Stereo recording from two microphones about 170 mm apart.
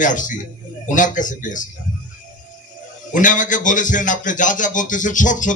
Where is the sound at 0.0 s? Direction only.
50° left (ahead or behind).